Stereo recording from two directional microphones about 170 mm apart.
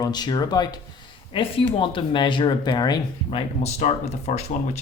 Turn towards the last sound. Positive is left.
turn(degrees=40)  # may be behind; listen again after turning